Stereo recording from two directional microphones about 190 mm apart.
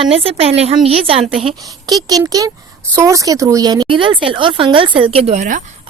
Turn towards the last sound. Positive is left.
turn(degrees=-40)  # may be behind; listen again after turning